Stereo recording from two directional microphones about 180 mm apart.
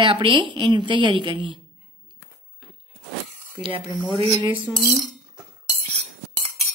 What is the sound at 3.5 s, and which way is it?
Speech, 30° right (ahead or behind).